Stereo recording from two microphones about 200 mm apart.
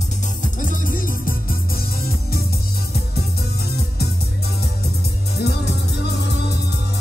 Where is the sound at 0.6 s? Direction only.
40° left (ahead or behind).